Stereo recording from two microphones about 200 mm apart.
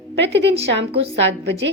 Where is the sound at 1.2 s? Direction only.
60° right (ahead or behind).